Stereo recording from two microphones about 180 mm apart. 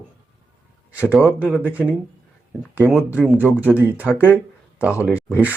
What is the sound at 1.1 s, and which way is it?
Speech, 5° right (ahead or behind).